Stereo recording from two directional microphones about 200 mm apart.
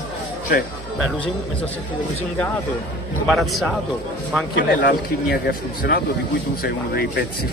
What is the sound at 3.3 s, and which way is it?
Speech, centre (ahead or behind).